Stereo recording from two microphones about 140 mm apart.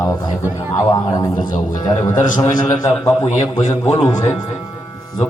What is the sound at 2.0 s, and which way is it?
Speech, 65° left (ahead or behind).